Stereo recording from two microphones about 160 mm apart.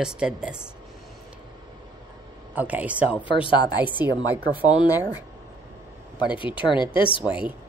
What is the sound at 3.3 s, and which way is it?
Speech, 30° left (ahead or behind).